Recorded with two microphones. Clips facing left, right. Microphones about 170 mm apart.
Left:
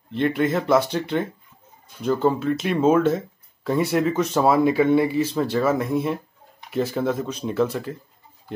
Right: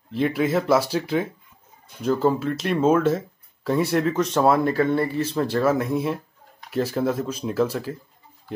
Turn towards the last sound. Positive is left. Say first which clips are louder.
# even
turn(degrees=0)  # may be behind; listen again after turning